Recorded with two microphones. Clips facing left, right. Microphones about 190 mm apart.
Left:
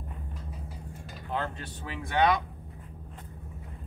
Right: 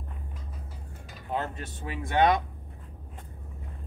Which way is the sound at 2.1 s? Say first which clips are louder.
Right 2 dB; 50° right (ahead or behind).